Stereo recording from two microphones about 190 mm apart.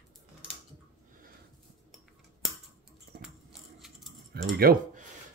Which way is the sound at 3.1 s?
55° right (ahead or behind).